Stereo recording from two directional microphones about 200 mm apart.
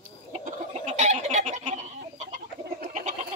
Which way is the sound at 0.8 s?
35° right (ahead or behind).